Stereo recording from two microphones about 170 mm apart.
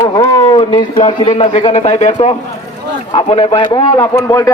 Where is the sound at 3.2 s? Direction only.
30° left (ahead or behind).